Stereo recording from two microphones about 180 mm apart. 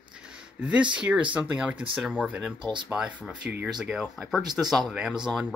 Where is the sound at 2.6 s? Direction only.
25° right (ahead or behind).